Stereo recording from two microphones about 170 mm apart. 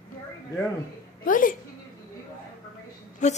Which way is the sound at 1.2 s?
55° left (ahead or behind).